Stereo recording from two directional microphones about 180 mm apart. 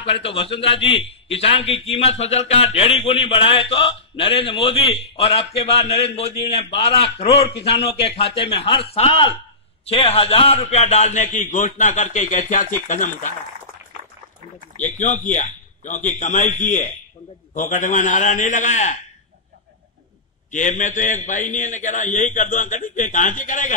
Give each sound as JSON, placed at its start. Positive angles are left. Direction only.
{"t": 0.2, "sound": "speech", "side_deg": 30}
{"t": 7.2, "sound": "a man's voice", "side_deg": 70}
{"t": 8.2, "sound": "a man's voice", "side_deg": 30}
{"t": 15.0, "sound": "a man's voice", "side_deg": 45}
{"t": 20.5, "sound": "a man's voice", "side_deg": 45}